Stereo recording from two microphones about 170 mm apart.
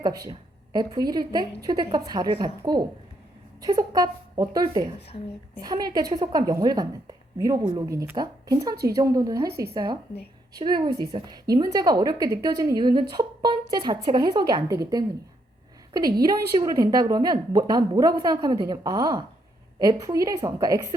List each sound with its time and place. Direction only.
0.0 s a woman's voice: 25° right (ahead or behind)
4.9 s a woman's voice: 35° left (ahead or behind)
5.6 s a woman's voice: 25° right (ahead or behind)
16.2 s a woman's voice: 25° right (ahead or behind)